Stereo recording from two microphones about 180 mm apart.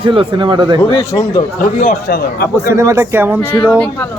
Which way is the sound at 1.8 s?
45° left (ahead or behind).